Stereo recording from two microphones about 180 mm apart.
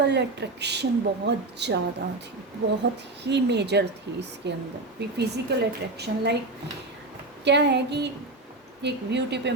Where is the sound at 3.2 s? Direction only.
70° right (ahead or behind).